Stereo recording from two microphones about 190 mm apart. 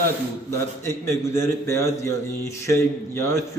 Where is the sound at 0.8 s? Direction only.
15° left (ahead or behind).